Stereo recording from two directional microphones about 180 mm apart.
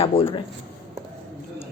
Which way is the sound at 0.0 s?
30° left (ahead or behind).